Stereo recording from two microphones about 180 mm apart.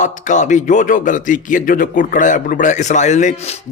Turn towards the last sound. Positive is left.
turn(degrees=40)  # may be behind; listen again after turning